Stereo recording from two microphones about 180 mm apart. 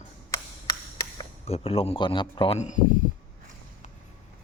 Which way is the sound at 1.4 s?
35° left (ahead or behind).